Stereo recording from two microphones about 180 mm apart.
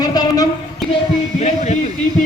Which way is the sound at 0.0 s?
20° left (ahead or behind).